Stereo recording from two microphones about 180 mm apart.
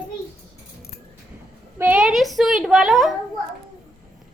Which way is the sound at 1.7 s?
10° right (ahead or behind).